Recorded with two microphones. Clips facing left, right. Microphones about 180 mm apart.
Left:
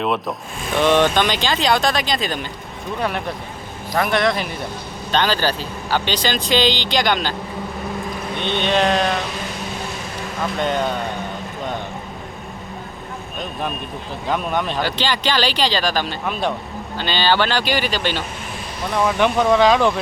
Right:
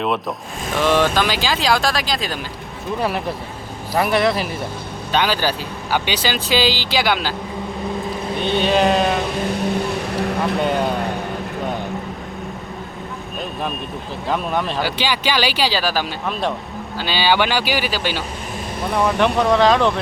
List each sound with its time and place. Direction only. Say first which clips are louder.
0.0 s speech: even; centre (ahead or behind)
8.4 s speech: right 2 dB; 5° right (ahead or behind)
9.6 s vehicle: right 8 dB; 60° right (ahead or behind)
10.6 s speech: left 1 dB; 10° right (ahead or behind)
14.3 s speech: even; centre (ahead or behind)